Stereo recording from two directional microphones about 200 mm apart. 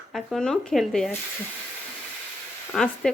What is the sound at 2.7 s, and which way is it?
Speech, centre (ahead or behind).